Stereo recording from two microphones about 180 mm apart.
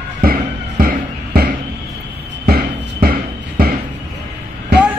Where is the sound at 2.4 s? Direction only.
55° right (ahead or behind).